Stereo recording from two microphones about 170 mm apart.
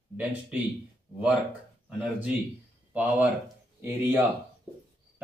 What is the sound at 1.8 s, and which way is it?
Speech, 5° right (ahead or behind).